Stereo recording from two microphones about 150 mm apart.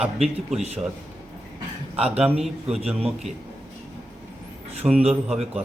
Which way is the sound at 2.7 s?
45° right (ahead or behind).